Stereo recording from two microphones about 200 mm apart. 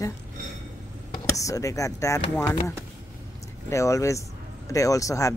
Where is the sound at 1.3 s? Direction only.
15° left (ahead or behind).